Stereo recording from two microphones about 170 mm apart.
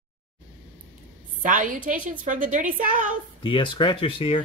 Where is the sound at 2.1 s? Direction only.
50° right (ahead or behind).